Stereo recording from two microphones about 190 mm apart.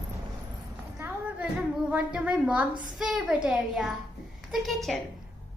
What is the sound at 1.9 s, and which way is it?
A woman's voice, 5° right (ahead or behind).